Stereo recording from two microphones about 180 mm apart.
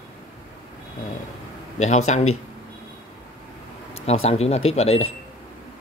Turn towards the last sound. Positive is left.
turn(degrees=35)  # may be behind; listen again after turning